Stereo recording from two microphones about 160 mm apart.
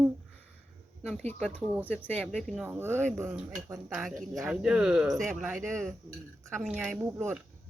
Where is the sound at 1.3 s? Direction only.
5° left (ahead or behind).